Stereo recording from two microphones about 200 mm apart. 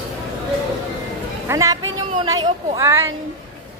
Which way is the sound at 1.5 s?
15° right (ahead or behind).